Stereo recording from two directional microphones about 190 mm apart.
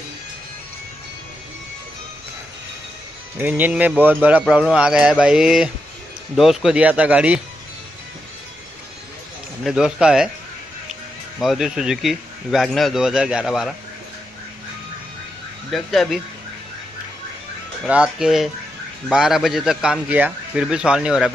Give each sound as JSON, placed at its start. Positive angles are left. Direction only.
{"t": 3.3, "sound": "a man's voice", "side_deg": -10}
{"t": 9.7, "sound": "a man's voice", "side_deg": -5}
{"t": 15.7, "sound": "a man's voice", "side_deg": 0}
{"t": 17.8, "sound": "a man's voice", "side_deg": -5}